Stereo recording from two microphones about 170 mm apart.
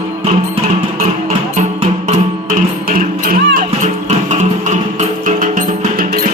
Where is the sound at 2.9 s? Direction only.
55° right (ahead or behind).